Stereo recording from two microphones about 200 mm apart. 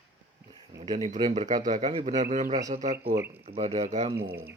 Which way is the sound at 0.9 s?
40° right (ahead or behind).